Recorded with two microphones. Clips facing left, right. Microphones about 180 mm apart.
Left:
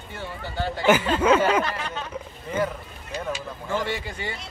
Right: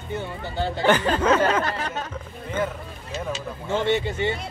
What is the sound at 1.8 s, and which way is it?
Speech, 45° right (ahead or behind).